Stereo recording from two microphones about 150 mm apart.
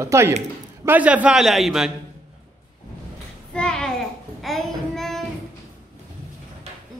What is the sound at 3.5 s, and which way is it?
Child singing, 5° left (ahead or behind).